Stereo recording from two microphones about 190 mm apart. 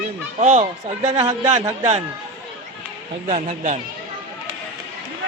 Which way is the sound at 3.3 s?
40° right (ahead or behind).